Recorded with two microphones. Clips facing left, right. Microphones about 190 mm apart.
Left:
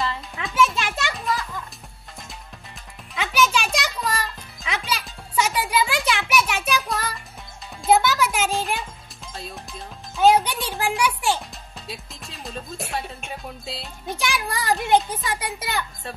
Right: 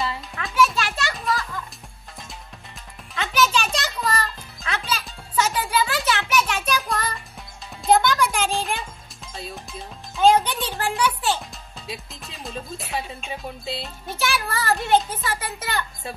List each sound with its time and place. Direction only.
0.0 s children playing: centre (ahead or behind)
0.7 s children playing: 20° left (ahead or behind)
3.2 s music: 10° left (ahead or behind)
11.9 s music: centre (ahead or behind)
14.0 s a child's voice: 15° left (ahead or behind)